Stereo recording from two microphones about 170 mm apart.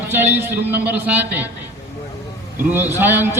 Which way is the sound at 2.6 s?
10° right (ahead or behind).